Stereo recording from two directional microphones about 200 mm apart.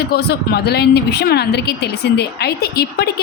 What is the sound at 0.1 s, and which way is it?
Speech, 50° left (ahead or behind).